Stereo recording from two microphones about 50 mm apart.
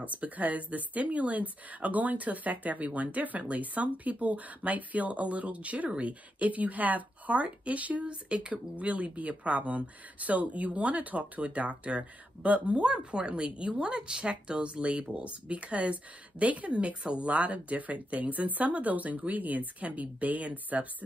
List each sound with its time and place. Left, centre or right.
0.0 s a woman's voice: right